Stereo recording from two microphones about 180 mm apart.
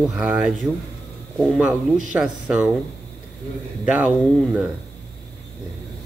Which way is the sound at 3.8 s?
5° right (ahead or behind).